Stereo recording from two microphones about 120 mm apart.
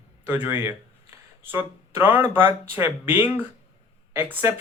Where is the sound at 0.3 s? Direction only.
15° right (ahead or behind).